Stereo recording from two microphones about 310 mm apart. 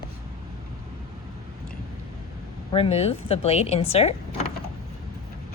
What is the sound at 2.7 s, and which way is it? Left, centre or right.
A woman's voice, centre.